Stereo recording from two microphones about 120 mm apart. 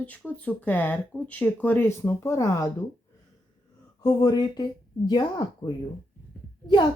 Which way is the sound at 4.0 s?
30° left (ahead or behind).